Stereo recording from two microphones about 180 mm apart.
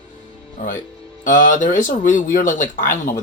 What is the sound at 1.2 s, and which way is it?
Speech, 45° left (ahead or behind).